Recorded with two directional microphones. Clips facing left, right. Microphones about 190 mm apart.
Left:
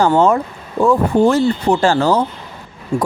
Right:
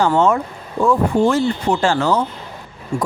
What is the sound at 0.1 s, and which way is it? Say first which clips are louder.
Speech: left 2 dB; 35° left (ahead or behind).